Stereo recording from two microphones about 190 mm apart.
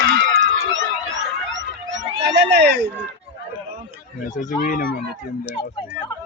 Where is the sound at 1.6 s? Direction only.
75° right (ahead or behind); by 2.9 s 60° right (ahead or behind).